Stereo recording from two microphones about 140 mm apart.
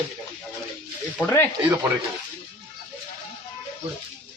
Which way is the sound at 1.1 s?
15° left (ahead or behind).